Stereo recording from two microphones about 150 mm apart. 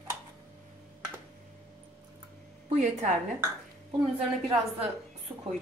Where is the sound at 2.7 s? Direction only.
50° right (ahead or behind).